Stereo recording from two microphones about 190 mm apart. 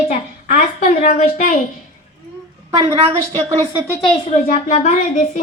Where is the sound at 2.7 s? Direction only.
20° right (ahead or behind).